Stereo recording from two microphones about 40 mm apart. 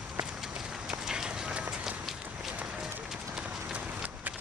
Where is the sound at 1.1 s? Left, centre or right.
Centre.